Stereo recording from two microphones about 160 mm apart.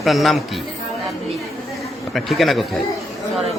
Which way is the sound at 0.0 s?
Centre (ahead or behind).